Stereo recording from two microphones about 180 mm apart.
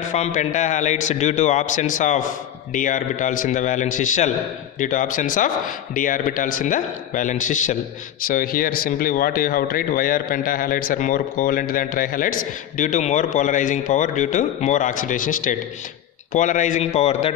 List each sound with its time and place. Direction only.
0.1 s a man's voice: 40° left (ahead or behind)